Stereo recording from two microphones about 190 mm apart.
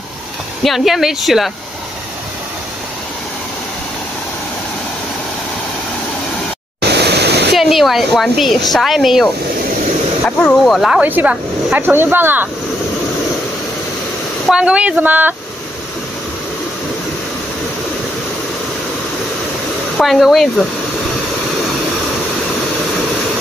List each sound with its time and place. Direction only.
0.7 s speech: centre (ahead or behind)
6.8 s pink noise: 60° right (ahead or behind)
7.5 s speech: centre (ahead or behind)
14.5 s speech: 5° right (ahead or behind)
20.0 s speech: centre (ahead or behind)